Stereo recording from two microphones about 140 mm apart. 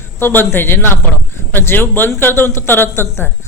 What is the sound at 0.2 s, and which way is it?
Speech, 15° left (ahead or behind).